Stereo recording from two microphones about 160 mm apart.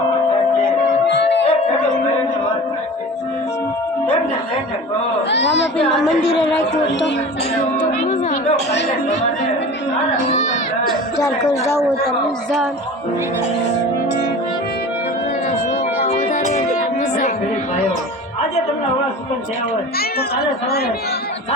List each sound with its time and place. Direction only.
1.0 s music: 90° left
5.3 s chatter: 90° left
11.2 s a man's voice: 20° left (ahead or behind)
16.0 s music: 45° left (ahead or behind)